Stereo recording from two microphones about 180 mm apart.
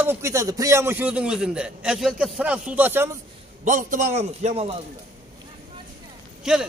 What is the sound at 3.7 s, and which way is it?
A man's voice, 45° right (ahead or behind).